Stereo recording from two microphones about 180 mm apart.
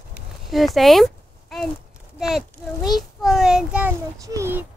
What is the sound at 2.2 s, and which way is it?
A child's voice, centre (ahead or behind).